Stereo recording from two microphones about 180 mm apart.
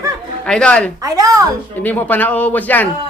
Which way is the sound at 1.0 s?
20° right (ahead or behind).